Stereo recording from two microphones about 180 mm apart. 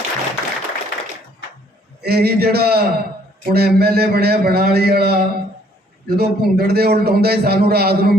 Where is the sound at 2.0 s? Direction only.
60° right (ahead or behind).